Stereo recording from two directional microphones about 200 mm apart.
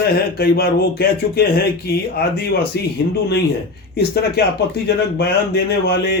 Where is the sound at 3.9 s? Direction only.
55° left (ahead or behind).